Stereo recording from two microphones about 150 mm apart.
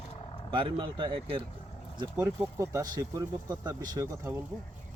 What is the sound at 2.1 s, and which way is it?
Speech, 15° right (ahead or behind).